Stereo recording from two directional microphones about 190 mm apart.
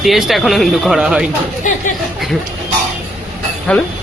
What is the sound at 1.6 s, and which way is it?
Speech, 40° left (ahead or behind).